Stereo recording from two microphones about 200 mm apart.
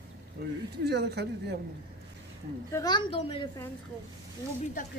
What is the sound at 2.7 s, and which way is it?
Speech, 20° left (ahead or behind).